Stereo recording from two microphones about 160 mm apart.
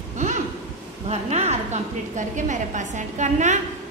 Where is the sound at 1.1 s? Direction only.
45° right (ahead or behind).